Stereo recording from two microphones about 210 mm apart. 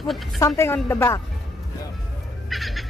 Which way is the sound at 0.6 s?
10° left (ahead or behind).